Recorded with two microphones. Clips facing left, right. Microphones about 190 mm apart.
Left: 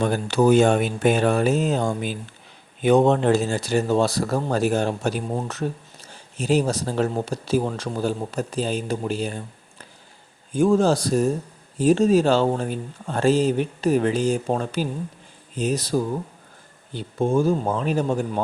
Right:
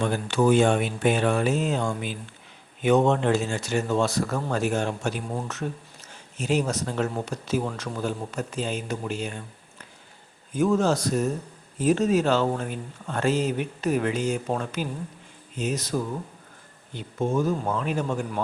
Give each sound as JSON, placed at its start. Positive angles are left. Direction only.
{"t": 0.0, "sound": "speech", "side_deg": 40}
{"t": 10.5, "sound": "speech", "side_deg": 30}